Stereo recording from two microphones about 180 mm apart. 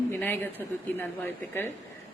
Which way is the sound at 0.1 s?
10° left (ahead or behind).